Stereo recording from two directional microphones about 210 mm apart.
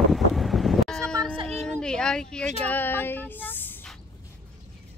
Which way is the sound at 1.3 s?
30° right (ahead or behind).